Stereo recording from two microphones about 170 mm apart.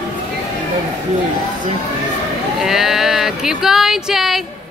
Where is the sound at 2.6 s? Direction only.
Centre (ahead or behind).